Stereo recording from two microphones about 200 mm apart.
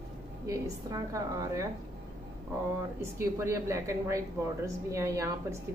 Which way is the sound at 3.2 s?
15° right (ahead or behind).